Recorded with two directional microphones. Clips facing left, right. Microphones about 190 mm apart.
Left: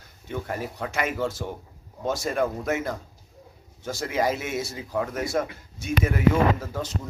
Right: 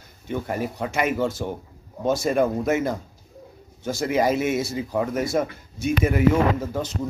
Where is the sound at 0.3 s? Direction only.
15° right (ahead or behind).